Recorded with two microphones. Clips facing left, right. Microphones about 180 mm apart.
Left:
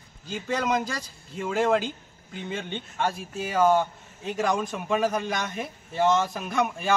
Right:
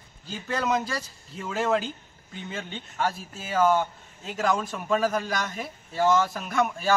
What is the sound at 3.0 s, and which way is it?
A man's voice, 15° left (ahead or behind).